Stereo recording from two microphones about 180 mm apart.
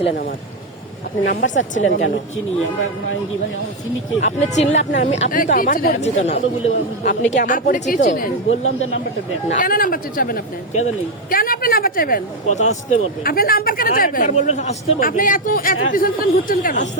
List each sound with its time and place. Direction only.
1.2 s speech: 70° left (ahead or behind)
1.8 s a woman's voice: 90° left
4.5 s speech: 40° left (ahead or behind)
8.4 s a woman's voice: 90° left
9.5 s speech: 50° left (ahead or behind)